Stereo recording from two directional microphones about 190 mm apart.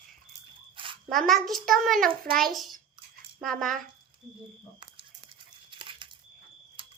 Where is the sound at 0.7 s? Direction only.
25° right (ahead or behind).